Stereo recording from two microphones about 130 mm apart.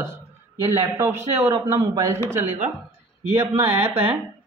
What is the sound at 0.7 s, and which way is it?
A woman's voice, 20° right (ahead or behind).